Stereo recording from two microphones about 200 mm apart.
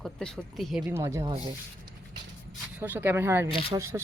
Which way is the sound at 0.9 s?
15° right (ahead or behind).